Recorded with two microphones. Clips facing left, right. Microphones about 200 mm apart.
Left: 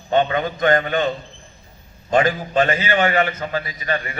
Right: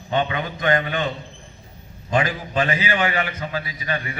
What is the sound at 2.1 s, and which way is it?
A man's voice, 45° left (ahead or behind).